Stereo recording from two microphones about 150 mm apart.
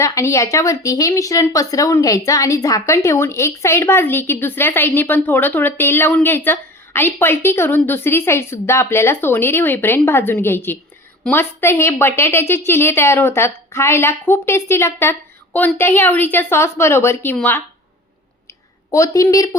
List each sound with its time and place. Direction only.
0.0 s speech: 20° left (ahead or behind)
18.9 s a woman's voice: 20° left (ahead or behind)